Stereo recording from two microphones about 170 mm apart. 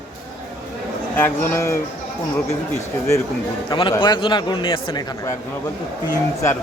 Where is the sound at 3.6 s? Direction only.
30° left (ahead or behind).